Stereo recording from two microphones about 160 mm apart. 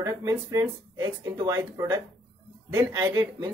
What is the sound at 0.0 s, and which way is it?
Speech, 20° right (ahead or behind).